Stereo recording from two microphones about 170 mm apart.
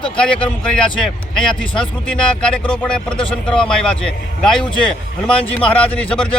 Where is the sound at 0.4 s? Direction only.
5° left (ahead or behind).